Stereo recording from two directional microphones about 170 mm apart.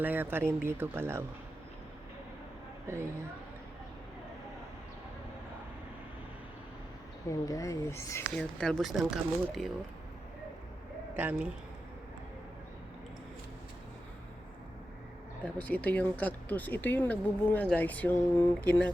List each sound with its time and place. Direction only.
0.0 s speech: 10° right (ahead or behind)
2.8 s a woman's voice: 15° right (ahead or behind)
7.3 s speech: 20° left (ahead or behind)
8.4 s speech: 5° left (ahead or behind)
11.2 s speech: 10° right (ahead or behind)
15.5 s speech: 10° left (ahead or behind)